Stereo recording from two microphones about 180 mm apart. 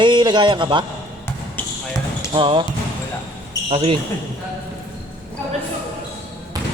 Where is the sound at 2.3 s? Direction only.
30° right (ahead or behind).